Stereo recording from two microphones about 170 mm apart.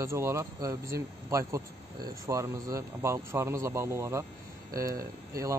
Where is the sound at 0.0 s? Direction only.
15° right (ahead or behind).